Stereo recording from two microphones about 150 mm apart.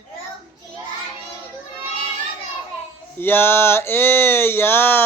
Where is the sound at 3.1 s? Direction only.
15° left (ahead or behind).